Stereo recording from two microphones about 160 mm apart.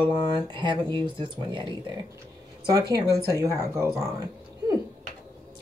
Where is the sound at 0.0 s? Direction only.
30° right (ahead or behind).